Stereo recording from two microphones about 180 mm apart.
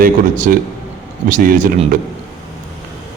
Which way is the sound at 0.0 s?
50° right (ahead or behind).